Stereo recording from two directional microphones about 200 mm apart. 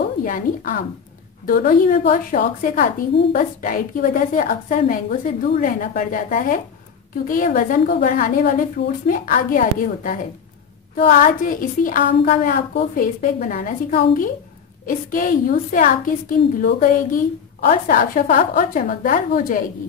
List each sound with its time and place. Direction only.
0.2 s a woman's voice: 40° left (ahead or behind)